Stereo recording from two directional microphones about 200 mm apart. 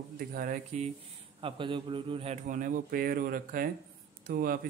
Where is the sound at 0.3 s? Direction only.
45° right (ahead or behind).